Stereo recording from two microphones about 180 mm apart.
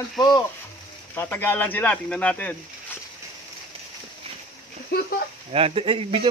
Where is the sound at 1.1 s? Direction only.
10° left (ahead or behind).